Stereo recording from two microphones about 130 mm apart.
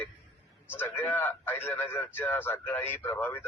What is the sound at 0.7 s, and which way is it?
A man's voice, 15° left (ahead or behind).